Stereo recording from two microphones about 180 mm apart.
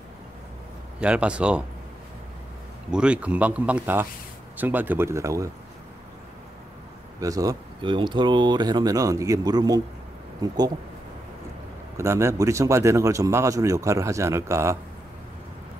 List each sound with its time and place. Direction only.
0.9 s speech: 5° right (ahead or behind)
2.9 s speech: 5° right (ahead or behind)
7.2 s speech: 20° right (ahead or behind)
12.0 s speech: 15° right (ahead or behind)